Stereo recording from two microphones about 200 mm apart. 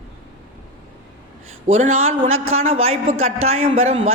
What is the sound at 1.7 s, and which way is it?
A man's voice, 35° right (ahead or behind).